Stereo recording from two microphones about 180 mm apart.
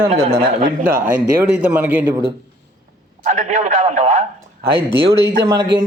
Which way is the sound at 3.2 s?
40° right (ahead or behind).